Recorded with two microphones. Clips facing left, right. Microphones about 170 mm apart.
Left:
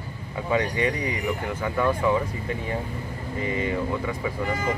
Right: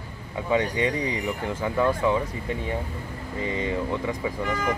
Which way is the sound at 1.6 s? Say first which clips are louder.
Right 2 dB; 15° right (ahead or behind).